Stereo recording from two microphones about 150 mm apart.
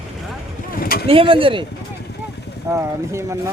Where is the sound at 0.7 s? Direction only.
80° left.